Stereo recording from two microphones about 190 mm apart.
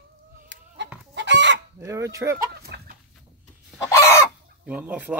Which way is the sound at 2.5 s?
55° right (ahead or behind).